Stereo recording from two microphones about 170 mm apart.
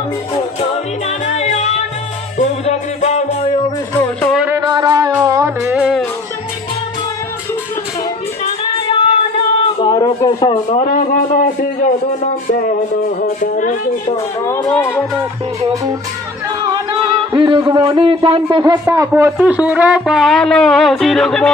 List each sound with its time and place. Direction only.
1.0 s music: 40° left (ahead or behind)
4.0 s music: 10° left (ahead or behind)
4.6 s music: 25° right (ahead or behind)
5.8 s music: centre (ahead or behind)
9.6 s a sound: 25° left (ahead or behind)
10.8 s a sound: 55° left (ahead or behind)
14.1 s a sound: 20° left (ahead or behind)
14.8 s music: 15° left (ahead or behind)
15.7 s a man's voice: 20° right (ahead or behind)
17.3 s a man's voice: 25° right (ahead or behind)
18.6 s a man's voice: 15° right (ahead or behind); by 21.5 s 5° left (ahead or behind)